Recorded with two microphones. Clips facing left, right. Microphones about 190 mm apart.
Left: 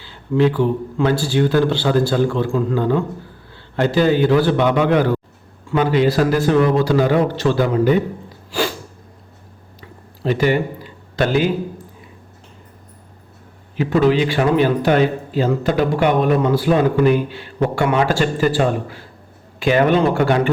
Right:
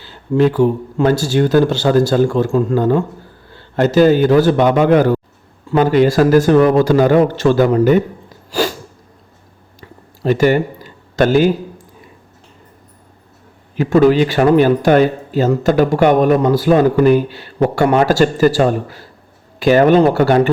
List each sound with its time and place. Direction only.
0.0 s a man's voice: 45° right (ahead or behind)
8.5 s sneeze: 40° right (ahead or behind)
10.2 s speech: 45° right (ahead or behind)
13.7 s speech: 45° right (ahead or behind)